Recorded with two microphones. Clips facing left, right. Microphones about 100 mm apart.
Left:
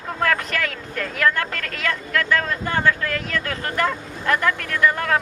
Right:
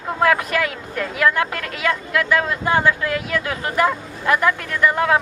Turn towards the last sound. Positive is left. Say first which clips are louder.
# right 2 dB
turn(degrees=-10)  # may be behind; listen again after turning